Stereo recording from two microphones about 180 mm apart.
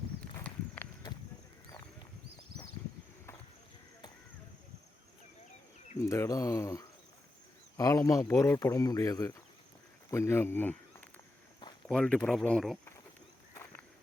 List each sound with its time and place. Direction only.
0.3 s a sound: 10° left (ahead or behind)
6.0 s speech: 15° left (ahead or behind)
11.9 s speech: 5° left (ahead or behind)